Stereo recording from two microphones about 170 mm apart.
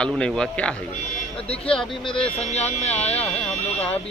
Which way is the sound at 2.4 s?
40° left (ahead or behind).